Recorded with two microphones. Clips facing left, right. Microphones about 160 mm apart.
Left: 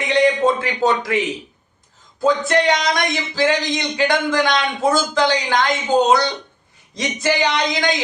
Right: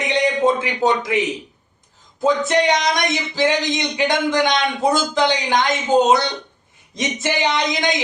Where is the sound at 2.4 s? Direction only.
20° right (ahead or behind).